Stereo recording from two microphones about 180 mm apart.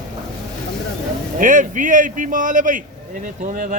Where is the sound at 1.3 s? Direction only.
45° right (ahead or behind).